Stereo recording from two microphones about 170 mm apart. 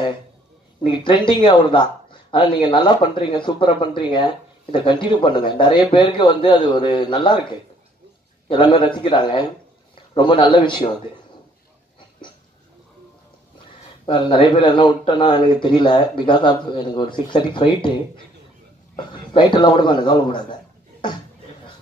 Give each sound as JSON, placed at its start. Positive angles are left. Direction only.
{"t": 0.8, "sound": "speech", "side_deg": 25}
{"t": 8.5, "sound": "speech", "side_deg": 30}
{"t": 14.0, "sound": "speech", "side_deg": 30}
{"t": 18.9, "sound": "speech", "side_deg": 25}